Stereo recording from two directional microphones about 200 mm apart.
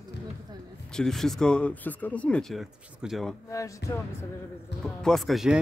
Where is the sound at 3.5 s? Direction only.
15° left (ahead or behind).